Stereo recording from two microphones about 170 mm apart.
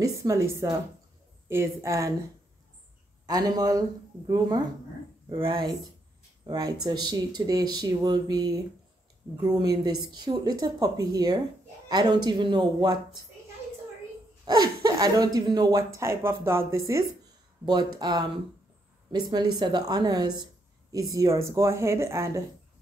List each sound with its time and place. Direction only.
0.0 s a woman's voice: 20° right (ahead or behind)
3.3 s speech: 20° right (ahead or behind)
14.4 s speech: 25° right (ahead or behind)
19.3 s speech: 25° right (ahead or behind)